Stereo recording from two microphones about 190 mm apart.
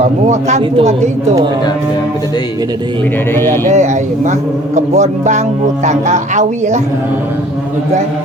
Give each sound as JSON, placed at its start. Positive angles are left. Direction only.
{"t": 0.0, "sound": "speech", "side_deg": -35}
{"t": 3.3, "sound": "a man's voice", "side_deg": 10}
{"t": 4.3, "sound": "speech", "side_deg": -40}